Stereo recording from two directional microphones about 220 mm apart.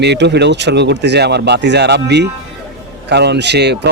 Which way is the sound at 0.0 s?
50° right (ahead or behind).